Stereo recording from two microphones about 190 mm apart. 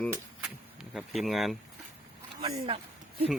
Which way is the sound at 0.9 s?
Centre (ahead or behind).